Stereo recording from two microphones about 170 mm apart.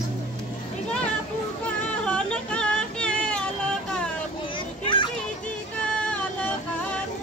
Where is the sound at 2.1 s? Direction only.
5° left (ahead or behind).